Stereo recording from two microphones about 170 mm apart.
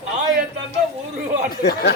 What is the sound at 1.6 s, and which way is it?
Speech, 75° left (ahead or behind).